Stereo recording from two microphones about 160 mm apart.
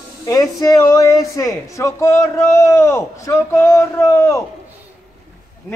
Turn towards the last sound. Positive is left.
turn(degrees=20)  # may be behind; listen again after turning